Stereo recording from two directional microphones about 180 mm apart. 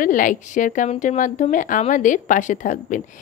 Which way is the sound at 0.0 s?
45° left (ahead or behind).